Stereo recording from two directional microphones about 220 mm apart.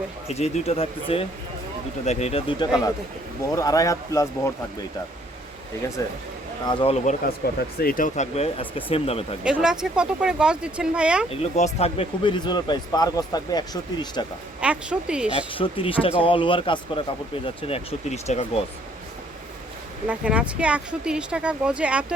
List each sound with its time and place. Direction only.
0.3 s speech: 30° left (ahead or behind)
3.5 s speech: 15° left (ahead or behind)
6.0 s speech: 15° left (ahead or behind)
9.4 s speech: 5° right (ahead or behind)
11.3 s speech: 30° left (ahead or behind)
14.6 s speech: 5° right (ahead or behind)
15.3 s speech: 25° left (ahead or behind)
20.1 s speech: 5° right (ahead or behind)